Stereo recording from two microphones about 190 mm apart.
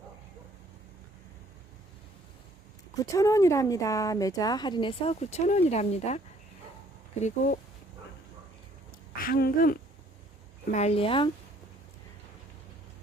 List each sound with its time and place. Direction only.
2.9 s a woman's voice: 20° left (ahead or behind); by 7.6 s 45° left (ahead or behind)
9.1 s speech: 50° left (ahead or behind)
10.7 s a woman's voice: 35° left (ahead or behind)